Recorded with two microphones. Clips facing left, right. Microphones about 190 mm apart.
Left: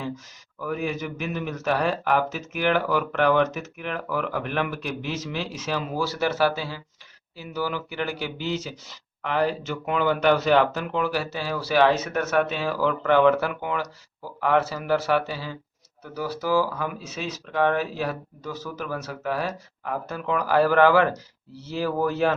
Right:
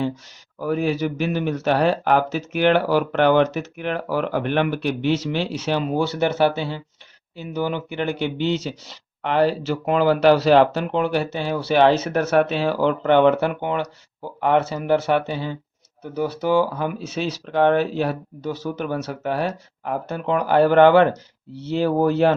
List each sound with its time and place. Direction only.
0.6 s a man's voice: 30° right (ahead or behind)